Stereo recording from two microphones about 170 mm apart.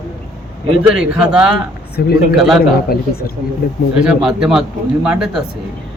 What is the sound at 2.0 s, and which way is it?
Speech, 65° left (ahead or behind).